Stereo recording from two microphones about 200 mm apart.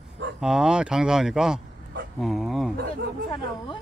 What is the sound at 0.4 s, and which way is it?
Speech, 5° right (ahead or behind).